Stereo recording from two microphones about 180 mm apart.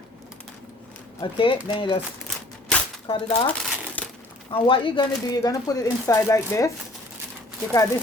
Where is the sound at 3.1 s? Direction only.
30° left (ahead or behind).